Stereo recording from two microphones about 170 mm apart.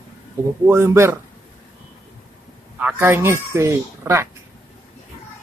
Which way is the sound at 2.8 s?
15° right (ahead or behind).